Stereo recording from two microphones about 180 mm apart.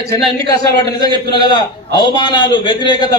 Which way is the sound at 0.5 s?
20° left (ahead or behind).